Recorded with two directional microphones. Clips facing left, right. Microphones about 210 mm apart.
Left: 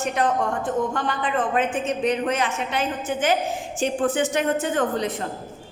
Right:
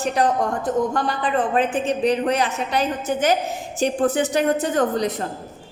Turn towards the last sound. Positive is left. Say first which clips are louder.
# right 3 dB
turn(degrees=-40)  # may be behind; listen again after turning